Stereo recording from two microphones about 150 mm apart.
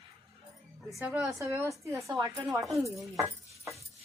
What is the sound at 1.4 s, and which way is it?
A woman's voice, 20° right (ahead or behind).